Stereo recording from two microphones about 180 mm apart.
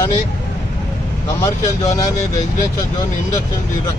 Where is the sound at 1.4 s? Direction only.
20° left (ahead or behind).